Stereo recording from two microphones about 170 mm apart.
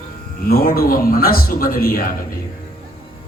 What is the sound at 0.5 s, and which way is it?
A man's voice, 60° left (ahead or behind).